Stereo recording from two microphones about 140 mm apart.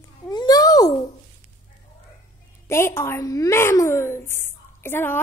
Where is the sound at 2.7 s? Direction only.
20° left (ahead or behind).